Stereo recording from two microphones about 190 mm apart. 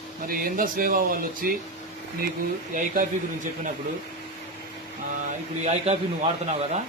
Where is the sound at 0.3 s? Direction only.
50° right (ahead or behind).